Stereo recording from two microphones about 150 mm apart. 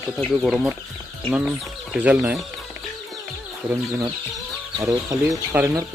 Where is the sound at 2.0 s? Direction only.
5° right (ahead or behind).